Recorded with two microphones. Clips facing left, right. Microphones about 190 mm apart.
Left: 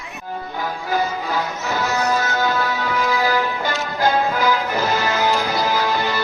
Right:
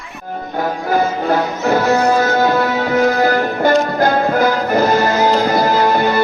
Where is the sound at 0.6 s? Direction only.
55° right (ahead or behind).